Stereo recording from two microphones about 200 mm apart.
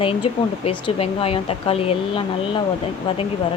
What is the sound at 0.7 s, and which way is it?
Speech, 30° left (ahead or behind).